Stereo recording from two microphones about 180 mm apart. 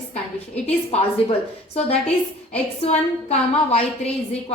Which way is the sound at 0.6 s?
35° left (ahead or behind).